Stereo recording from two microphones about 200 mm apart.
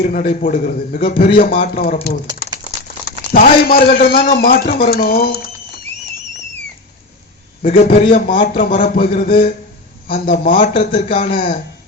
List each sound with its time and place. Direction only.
0.0 s a man's voice: 40° left (ahead or behind)
2.4 s crumpling: 50° left (ahead or behind)
3.3 s a man's voice: 45° left (ahead or behind)
7.6 s a man's voice: 45° left (ahead or behind)